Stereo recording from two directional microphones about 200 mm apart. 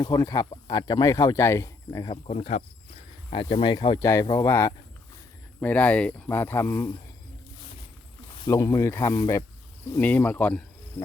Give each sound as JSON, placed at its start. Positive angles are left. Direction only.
{"t": 0.0, "sound": "speech", "side_deg": 20}
{"t": 2.2, "sound": "speech", "side_deg": 30}
{"t": 8.4, "sound": "speech", "side_deg": 20}